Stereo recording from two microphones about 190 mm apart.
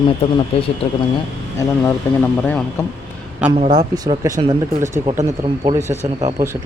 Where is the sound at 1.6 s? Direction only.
15° left (ahead or behind).